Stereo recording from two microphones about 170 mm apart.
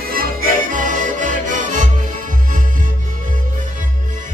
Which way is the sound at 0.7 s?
50° right (ahead or behind).